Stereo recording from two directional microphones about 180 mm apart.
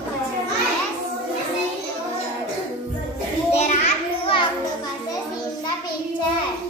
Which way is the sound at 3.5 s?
35° left (ahead or behind).